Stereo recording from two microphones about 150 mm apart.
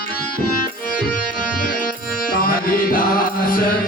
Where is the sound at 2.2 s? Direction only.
75° left (ahead or behind).